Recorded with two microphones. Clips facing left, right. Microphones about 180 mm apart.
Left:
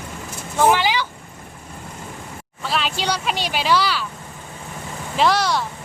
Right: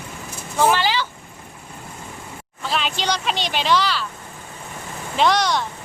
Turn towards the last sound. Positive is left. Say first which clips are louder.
# even
turn(degrees=5)  # may be behind; listen again after turning